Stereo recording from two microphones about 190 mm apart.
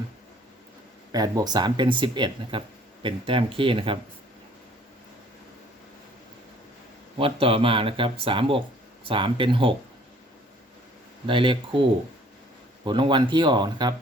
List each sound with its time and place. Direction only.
1.1 s speech: 20° right (ahead or behind)
7.2 s speech: 30° right (ahead or behind)
11.3 s speech: 25° right (ahead or behind)